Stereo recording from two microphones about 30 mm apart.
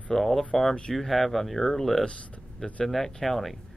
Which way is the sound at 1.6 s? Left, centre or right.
Centre.